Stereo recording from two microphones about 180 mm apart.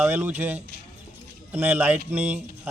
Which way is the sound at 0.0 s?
10° right (ahead or behind).